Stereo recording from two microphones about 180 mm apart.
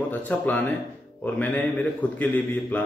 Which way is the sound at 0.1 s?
10° left (ahead or behind).